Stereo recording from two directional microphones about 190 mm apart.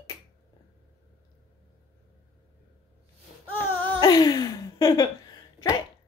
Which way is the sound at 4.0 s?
20° left (ahead or behind).